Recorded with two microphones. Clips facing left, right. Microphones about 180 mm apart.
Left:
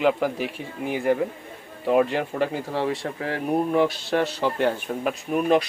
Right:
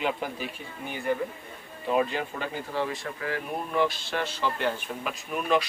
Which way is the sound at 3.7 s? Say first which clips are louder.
Left 6 dB; 50° left (ahead or behind).